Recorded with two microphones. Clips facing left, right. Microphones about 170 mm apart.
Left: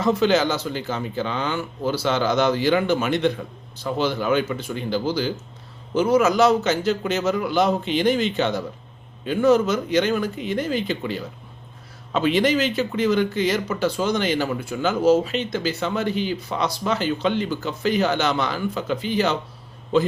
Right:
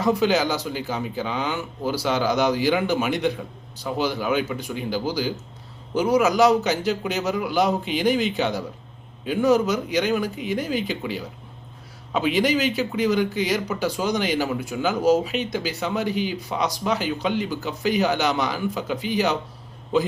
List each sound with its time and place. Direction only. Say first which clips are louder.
0.0 s speech: left 1 dB; 15° right (ahead or behind)